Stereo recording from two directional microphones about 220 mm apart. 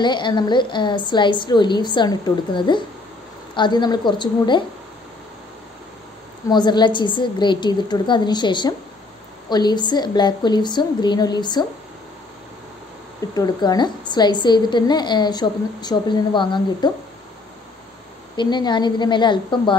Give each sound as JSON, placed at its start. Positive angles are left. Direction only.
{"t": 0.0, "sound": "a woman's voice", "side_deg": 20}
{"t": 6.5, "sound": "a woman's voice", "side_deg": 20}
{"t": 13.3, "sound": "a woman's voice", "side_deg": 15}
{"t": 18.3, "sound": "a woman's voice", "side_deg": 20}